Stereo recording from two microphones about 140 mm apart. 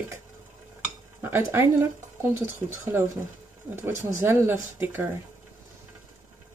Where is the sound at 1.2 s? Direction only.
15° right (ahead or behind).